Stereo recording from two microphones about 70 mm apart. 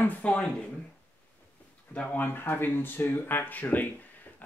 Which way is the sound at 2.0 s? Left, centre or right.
Left.